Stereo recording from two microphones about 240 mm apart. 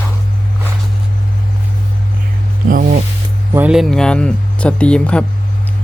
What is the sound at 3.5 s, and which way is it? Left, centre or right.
Speech, centre.